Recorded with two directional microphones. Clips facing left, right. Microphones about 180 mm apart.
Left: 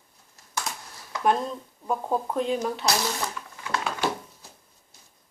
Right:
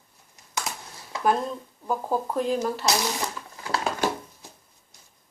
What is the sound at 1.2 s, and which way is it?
Speech, centre (ahead or behind).